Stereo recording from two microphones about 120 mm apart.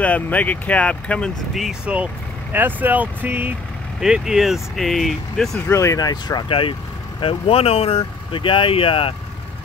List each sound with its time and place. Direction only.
0.0 s speech: 10° left (ahead or behind); by 3.5 s 15° right (ahead or behind)
4.0 s speech: 5° right (ahead or behind)
5.7 s speech: 25° left (ahead or behind); by 9.1 s 45° left (ahead or behind)